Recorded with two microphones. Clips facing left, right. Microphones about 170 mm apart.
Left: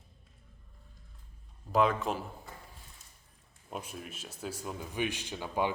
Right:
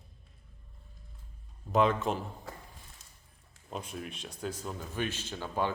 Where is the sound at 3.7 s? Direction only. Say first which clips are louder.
Right 2 dB; 10° left (ahead or behind).